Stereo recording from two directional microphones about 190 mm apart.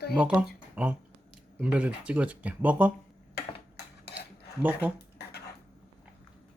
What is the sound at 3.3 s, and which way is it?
Dishes, 60° left (ahead or behind).